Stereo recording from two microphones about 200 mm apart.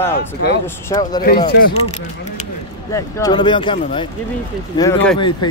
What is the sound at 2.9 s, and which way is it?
Speech, 20° left (ahead or behind).